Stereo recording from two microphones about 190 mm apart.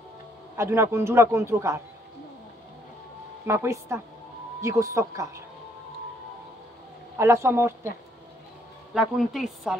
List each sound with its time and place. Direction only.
0.6 s speech: 15° right (ahead or behind)
3.4 s speech: 15° right (ahead or behind)
7.2 s speech: 15° right (ahead or behind)
8.9 s a woman's voice: 5° right (ahead or behind)